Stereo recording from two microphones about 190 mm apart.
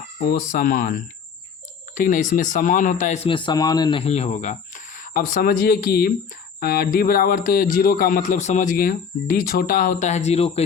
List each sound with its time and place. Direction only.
0.3 s speech: 50° left (ahead or behind)
3.2 s speech: 25° left (ahead or behind)